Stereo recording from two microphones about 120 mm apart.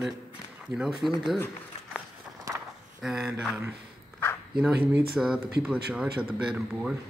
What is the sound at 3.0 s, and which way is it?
Speech, 5° right (ahead or behind).